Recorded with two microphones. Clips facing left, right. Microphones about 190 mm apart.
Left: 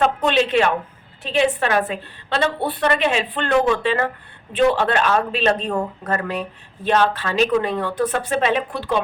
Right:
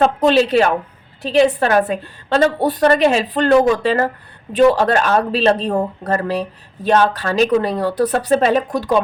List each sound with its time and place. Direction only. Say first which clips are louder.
0.0 s a woman's voice: right 5 dB; 35° right (ahead or behind)